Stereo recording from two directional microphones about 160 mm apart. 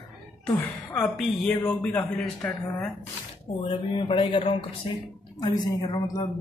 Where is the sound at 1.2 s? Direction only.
Centre (ahead or behind).